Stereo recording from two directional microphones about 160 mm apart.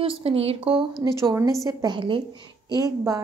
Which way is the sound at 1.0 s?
25° right (ahead or behind).